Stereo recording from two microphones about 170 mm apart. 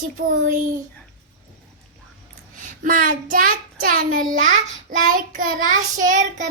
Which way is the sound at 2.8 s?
55° right (ahead or behind).